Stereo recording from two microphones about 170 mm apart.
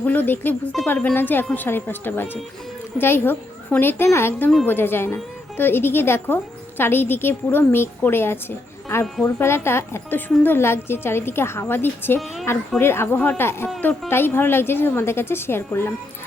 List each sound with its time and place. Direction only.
0.0 s a woman's voice: 10° left (ahead or behind)